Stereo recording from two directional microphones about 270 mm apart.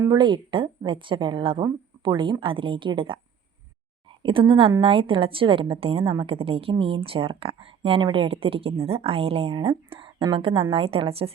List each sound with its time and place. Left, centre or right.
0.0 s speech: centre
4.2 s a woman's voice: centre